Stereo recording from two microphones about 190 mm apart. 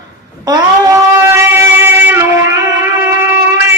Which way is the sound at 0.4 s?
20° right (ahead or behind).